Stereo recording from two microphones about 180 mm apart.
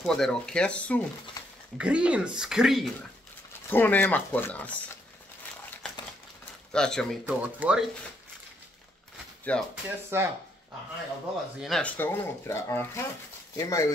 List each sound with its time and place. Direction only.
0.0 s speech: 5° left (ahead or behind)
1.8 s speech: 5° right (ahead or behind)
3.7 s speech: 10° left (ahead or behind)
6.7 s speech: 5° left (ahead or behind)
7.2 s speech: 5° right (ahead or behind)
9.5 s speech: 5° left (ahead or behind)
10.1 s speech: 15° right (ahead or behind)
11.6 s speech: 5° left (ahead or behind)